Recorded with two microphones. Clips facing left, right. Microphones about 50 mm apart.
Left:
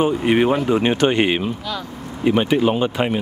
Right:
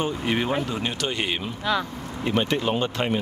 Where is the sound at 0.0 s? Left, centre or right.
Left.